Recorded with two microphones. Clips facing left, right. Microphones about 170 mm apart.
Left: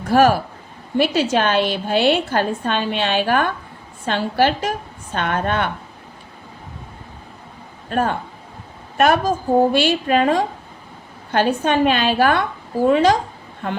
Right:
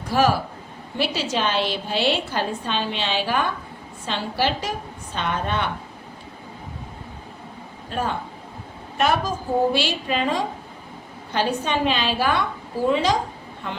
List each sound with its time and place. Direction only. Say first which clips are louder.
0.1 s a woman's voice: left 5 dB; 55° left (ahead or behind)
7.9 s a woman's voice: left 6 dB; 55° left (ahead or behind)